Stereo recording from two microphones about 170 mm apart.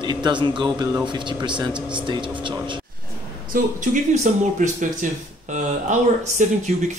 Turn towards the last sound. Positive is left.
turn(degrees=-45)  # may be behind; listen again after turning